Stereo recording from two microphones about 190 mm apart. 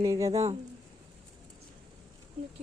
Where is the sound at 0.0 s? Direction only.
15° right (ahead or behind).